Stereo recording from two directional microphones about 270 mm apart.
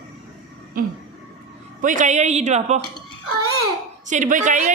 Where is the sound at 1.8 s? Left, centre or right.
Right.